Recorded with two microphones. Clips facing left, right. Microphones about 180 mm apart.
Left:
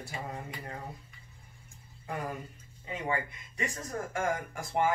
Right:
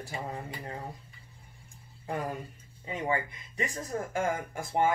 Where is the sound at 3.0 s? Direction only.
30° right (ahead or behind).